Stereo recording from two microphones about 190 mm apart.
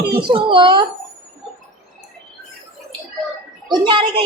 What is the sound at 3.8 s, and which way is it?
Speech, 25° right (ahead or behind).